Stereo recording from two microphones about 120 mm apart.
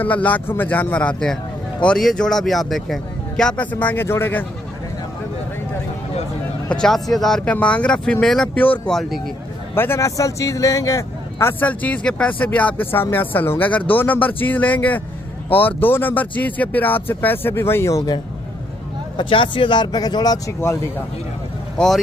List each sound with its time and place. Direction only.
0.0 s speech: 10° left (ahead or behind)
3.7 s speech: 20° left (ahead or behind)
6.7 s speech: 5° left (ahead or behind); by 18.1 s 25° left (ahead or behind)
19.1 s speech: 45° left (ahead or behind)
21.7 s speech: 5° left (ahead or behind)